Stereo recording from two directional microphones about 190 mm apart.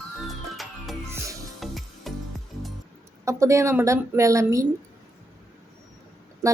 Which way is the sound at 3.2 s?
15° right (ahead or behind).